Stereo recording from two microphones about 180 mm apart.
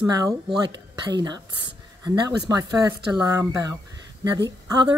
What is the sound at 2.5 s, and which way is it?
A woman's voice, 20° right (ahead or behind).